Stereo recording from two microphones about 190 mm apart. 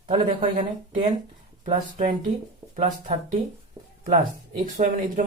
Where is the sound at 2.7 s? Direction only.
40° right (ahead or behind).